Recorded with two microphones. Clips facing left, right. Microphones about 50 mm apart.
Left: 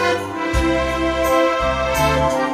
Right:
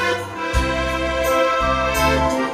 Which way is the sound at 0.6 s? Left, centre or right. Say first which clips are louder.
Left 3 dB; left.